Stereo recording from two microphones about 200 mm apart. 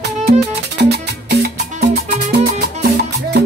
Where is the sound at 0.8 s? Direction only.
55° right (ahead or behind).